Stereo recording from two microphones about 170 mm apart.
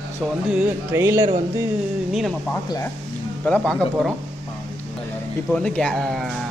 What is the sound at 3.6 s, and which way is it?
Speech, 5° left (ahead or behind).